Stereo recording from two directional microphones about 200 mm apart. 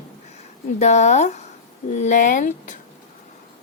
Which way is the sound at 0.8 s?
35° left (ahead or behind).